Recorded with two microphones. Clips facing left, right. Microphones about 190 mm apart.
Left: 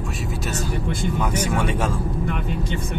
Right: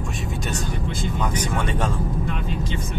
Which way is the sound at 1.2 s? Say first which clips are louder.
Left 1 dB; 10° left (ahead or behind).